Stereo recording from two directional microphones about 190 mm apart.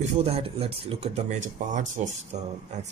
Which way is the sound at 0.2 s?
30° right (ahead or behind).